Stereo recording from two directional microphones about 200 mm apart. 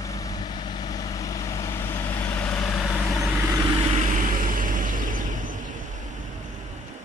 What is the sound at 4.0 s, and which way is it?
Vehicle, 40° right (ahead or behind).